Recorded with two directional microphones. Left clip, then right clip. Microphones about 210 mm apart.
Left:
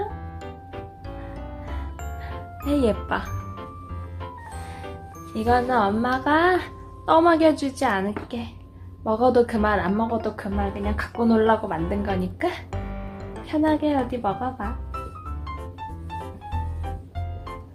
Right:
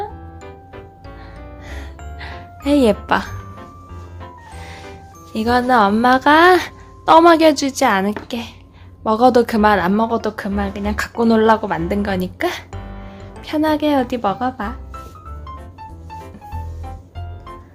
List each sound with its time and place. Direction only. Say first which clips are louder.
2.1 s music: right 6 dB; 50° right (ahead or behind)
5.3 s speech: right 6 dB; 50° right (ahead or behind)